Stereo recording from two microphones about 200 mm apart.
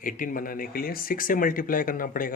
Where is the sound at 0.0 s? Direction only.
40° left (ahead or behind).